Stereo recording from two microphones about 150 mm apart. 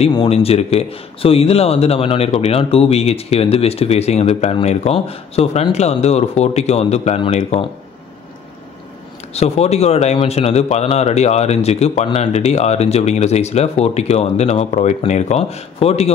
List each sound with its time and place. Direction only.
0.1 s speech: 40° left (ahead or behind)
9.3 s speech: 45° left (ahead or behind)